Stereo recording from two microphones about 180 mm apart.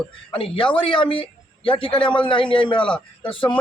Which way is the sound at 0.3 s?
30° left (ahead or behind).